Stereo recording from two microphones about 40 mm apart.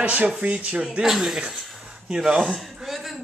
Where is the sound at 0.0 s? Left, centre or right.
Right.